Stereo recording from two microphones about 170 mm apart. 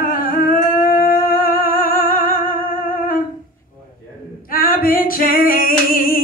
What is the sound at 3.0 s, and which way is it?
Humming, 55° left (ahead or behind).